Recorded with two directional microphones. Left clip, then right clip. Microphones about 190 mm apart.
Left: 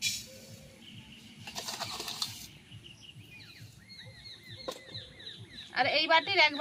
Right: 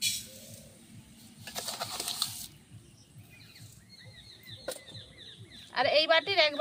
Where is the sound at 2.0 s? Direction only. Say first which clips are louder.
Right 5 dB; 30° right (ahead or behind).